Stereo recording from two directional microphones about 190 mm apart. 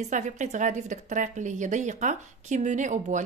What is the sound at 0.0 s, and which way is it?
Speech, 40° right (ahead or behind).